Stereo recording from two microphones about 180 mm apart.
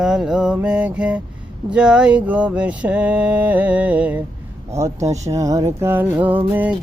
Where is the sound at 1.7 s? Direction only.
5° right (ahead or behind).